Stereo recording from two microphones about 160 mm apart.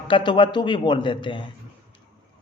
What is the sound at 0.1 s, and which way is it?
Speech, 30° left (ahead or behind).